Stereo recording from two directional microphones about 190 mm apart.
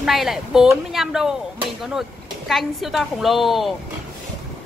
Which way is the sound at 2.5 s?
Centre (ahead or behind).